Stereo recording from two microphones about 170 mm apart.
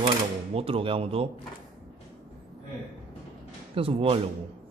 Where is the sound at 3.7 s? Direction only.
35° right (ahead or behind).